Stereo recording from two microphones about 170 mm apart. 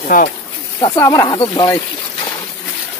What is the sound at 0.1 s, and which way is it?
Speech, 50° left (ahead or behind).